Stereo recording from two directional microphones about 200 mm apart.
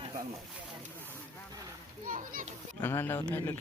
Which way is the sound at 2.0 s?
45° right (ahead or behind).